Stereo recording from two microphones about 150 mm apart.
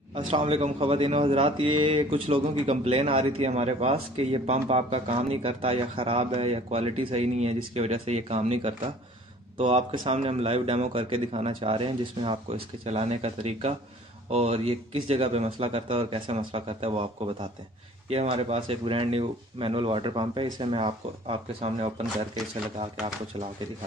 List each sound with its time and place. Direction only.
0.1 s speech: 40° right (ahead or behind)